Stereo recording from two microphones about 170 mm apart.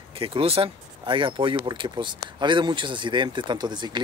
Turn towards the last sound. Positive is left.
turn(degrees=-25)  # may be behind; listen again after turning